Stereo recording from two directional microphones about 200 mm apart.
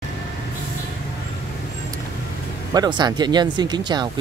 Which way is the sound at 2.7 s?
20° right (ahead or behind).